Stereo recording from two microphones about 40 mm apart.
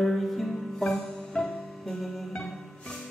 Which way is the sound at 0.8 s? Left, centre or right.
Centre.